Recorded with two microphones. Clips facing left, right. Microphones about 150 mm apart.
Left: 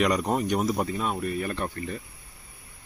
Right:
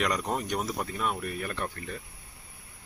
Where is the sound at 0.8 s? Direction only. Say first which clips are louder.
Left 4 dB; 25° left (ahead or behind).